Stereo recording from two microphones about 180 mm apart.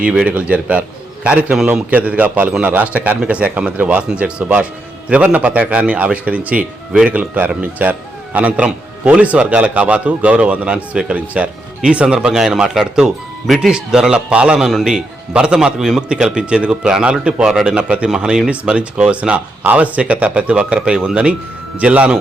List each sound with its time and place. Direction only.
0.0 s a man's voice: 5° right (ahead or behind)